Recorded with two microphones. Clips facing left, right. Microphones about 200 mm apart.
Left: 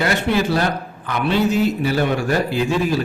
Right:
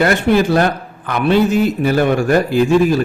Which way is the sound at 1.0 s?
50° right (ahead or behind).